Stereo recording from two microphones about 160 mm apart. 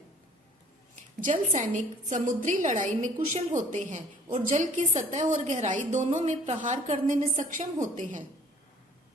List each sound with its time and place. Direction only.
1.2 s a woman's voice: 50° right (ahead or behind)